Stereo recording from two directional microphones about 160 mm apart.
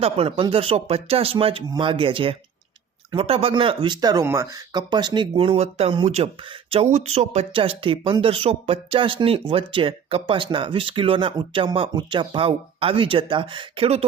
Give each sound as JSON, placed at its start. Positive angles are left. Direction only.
{"t": 0.0, "sound": "speech", "side_deg": -35}